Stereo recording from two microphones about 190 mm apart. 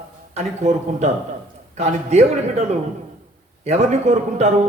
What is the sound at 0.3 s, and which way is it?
A man's voice, 35° right (ahead or behind).